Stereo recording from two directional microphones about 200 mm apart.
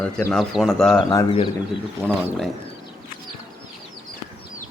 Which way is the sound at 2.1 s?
Centre (ahead or behind).